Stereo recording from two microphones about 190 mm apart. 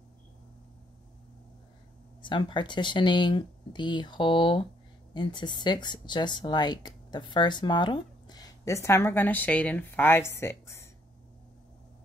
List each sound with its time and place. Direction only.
2.2 s speech: 25° left (ahead or behind)